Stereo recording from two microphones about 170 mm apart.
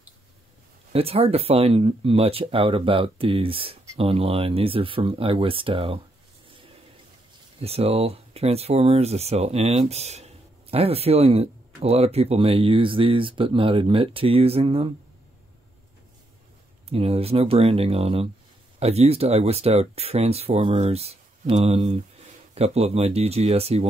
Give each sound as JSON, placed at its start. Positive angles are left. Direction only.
{"t": 0.9, "sound": "speech", "side_deg": -35}
{"t": 7.6, "sound": "speech", "side_deg": -35}
{"t": 16.9, "sound": "speech", "side_deg": -35}